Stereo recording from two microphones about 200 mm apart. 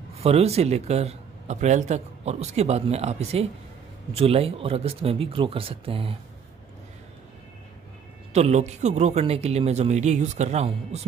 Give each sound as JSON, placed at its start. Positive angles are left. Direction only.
{"t": 0.1, "sound": "a man's voice", "side_deg": -30}
{"t": 8.3, "sound": "a man's voice", "side_deg": -35}